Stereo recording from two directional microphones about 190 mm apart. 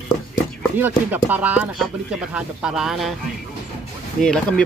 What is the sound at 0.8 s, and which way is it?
Speech, 10° right (ahead or behind).